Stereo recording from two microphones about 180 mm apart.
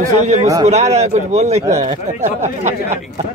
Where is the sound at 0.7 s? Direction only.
35° right (ahead or behind).